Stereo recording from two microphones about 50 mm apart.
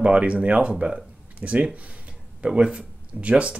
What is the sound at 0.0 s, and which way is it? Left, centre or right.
Speech, right.